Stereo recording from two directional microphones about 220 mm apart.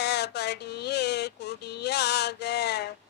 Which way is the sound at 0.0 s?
50° left (ahead or behind).